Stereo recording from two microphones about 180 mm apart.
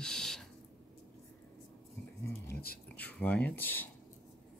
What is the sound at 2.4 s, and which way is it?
Speech, 60° left (ahead or behind).